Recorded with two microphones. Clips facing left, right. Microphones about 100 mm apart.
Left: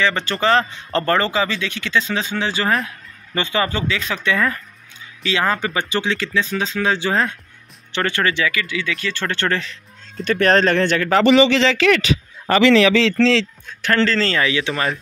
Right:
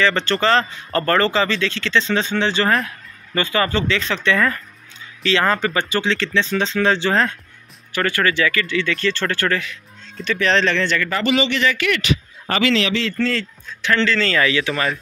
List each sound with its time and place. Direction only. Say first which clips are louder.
0.0 s speech: right 1 dB; 15° left (ahead or behind)
3.3 s speech: right 1 dB; 20° left (ahead or behind)
7.9 s speech: right 1 dB; 25° left (ahead or behind)
10.2 s speech: left 3 dB; 50° left (ahead or behind)
11.1 s a man's voice: left 6 dB; 85° left
13.0 s a man's voice: left 6 dB; 90° left
13.8 s a man's voice: left 1 dB; 40° left (ahead or behind)